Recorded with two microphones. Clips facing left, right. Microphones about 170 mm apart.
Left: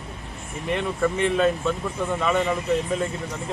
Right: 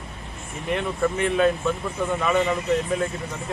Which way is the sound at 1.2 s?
Centre (ahead or behind).